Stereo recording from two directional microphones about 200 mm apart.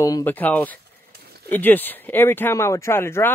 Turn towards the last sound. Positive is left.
turn(degrees=10)  # may be behind; listen again after turning